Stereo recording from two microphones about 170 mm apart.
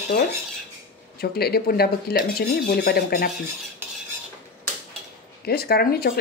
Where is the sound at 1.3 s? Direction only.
65° left (ahead or behind).